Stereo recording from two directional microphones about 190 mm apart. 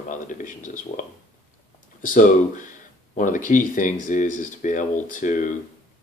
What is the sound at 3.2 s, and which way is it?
Speech, 45° left (ahead or behind).